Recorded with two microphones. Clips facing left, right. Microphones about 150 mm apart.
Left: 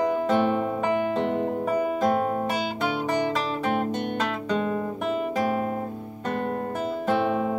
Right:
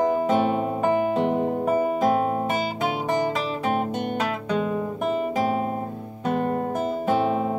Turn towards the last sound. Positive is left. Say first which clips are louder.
# right 1 dB
turn(degrees=-5)  # may be behind; listen again after turning